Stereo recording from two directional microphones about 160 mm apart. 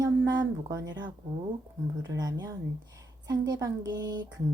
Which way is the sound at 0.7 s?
25° right (ahead or behind).